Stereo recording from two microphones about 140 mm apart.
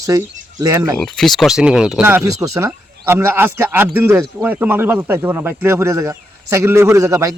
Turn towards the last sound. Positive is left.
turn(degrees=-20)  # may be behind; listen again after turning